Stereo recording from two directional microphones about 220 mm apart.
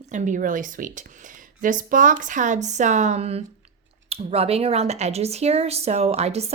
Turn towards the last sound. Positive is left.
turn(degrees=-30)  # may be behind; listen again after turning